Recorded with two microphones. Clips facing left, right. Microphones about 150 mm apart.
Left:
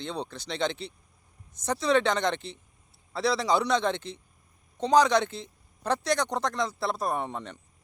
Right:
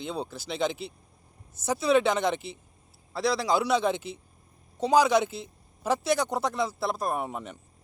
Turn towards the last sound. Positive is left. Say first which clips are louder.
# even
turn(degrees=-10)  # may be behind; listen again after turning